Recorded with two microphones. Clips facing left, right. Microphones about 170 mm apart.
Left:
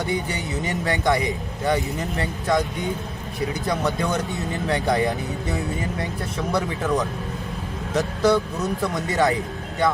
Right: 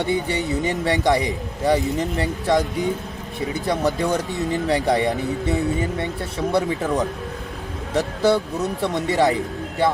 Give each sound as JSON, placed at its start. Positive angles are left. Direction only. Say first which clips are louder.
{"t": 0.0, "sound": "speech", "louder": "right 4 dB", "side_deg": -30}
{"t": 3.7, "sound": "speech", "louder": "right 4 dB", "side_deg": -30}
{"t": 7.9, "sound": "speech", "louder": "right 1 dB", "side_deg": -30}